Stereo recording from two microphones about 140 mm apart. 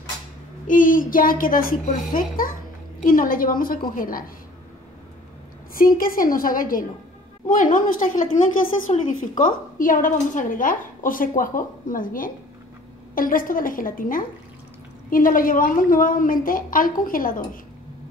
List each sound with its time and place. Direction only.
0.7 s a child's voice: 75° left (ahead or behind)
5.9 s a child's voice: 90° left; by 8.3 s 70° left (ahead or behind)
8.9 s a woman's voice: 50° left (ahead or behind)
9.4 s a woman's voice: 80° left